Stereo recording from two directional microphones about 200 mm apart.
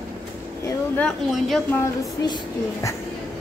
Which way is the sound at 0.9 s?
5° left (ahead or behind).